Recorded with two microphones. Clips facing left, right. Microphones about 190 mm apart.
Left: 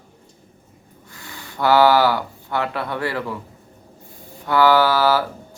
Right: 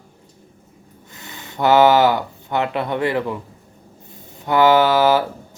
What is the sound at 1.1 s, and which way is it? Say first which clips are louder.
Speech: right 1 dB; 20° right (ahead or behind).